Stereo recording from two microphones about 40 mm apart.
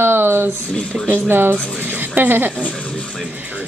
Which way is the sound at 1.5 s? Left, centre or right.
Left.